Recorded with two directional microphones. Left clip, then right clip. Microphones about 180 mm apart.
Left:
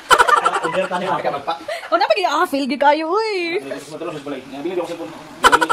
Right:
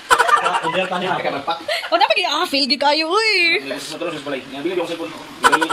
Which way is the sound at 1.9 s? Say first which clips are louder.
Even; 35° left (ahead or behind).